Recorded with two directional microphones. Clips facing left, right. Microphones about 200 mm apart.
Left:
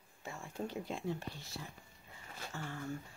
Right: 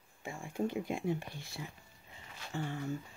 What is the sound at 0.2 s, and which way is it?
Speech, 15° right (ahead or behind).